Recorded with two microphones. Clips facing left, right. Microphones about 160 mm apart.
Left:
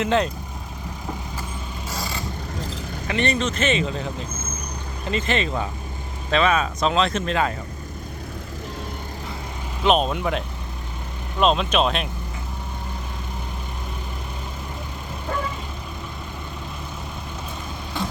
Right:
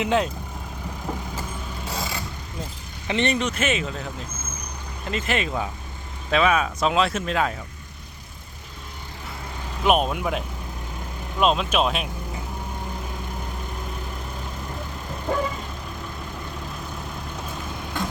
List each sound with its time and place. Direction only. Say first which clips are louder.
0.0 s speech: left 1 dB; 10° right (ahead or behind)
3.1 s speech: even; 20° right (ahead or behind); by 7.5 s 5° right (ahead or behind)
9.8 s speech: left 1 dB; 10° right (ahead or behind)